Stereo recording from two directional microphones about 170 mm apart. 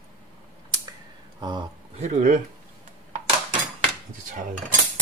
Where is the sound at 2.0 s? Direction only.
45° right (ahead or behind).